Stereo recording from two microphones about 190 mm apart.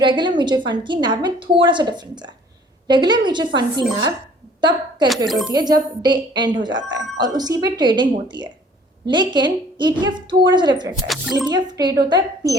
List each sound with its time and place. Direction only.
0.0 s speech: 25° right (ahead or behind)
5.0 s speech: centre (ahead or behind)
5.5 s speech: 20° right (ahead or behind)
10.9 s speech: centre (ahead or behind)
11.4 s speech: 20° right (ahead or behind)